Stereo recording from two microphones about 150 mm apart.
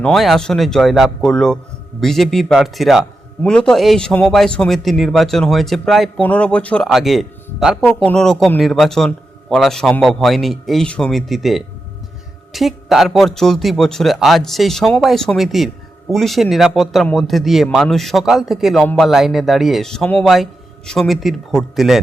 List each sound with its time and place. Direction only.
0.0 s a man's voice: centre (ahead or behind)